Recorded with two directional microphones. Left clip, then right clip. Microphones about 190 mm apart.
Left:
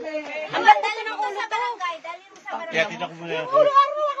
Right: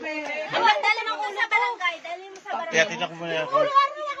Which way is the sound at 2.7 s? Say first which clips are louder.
Right 2 dB; 10° left (ahead or behind).